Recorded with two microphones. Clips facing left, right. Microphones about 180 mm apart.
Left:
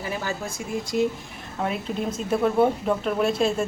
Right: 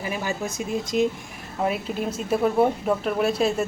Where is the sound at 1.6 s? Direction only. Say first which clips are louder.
Right 1 dB; 5° right (ahead or behind).